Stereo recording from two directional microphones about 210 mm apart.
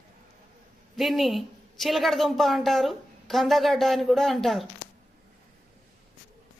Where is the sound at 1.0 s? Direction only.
Centre (ahead or behind).